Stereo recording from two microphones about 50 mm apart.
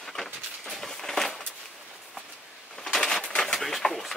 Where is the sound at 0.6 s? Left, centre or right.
Centre.